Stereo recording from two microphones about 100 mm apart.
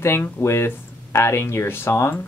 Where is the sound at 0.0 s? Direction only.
25° left (ahead or behind).